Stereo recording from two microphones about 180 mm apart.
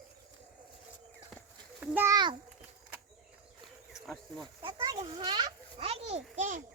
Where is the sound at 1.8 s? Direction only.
10° right (ahead or behind).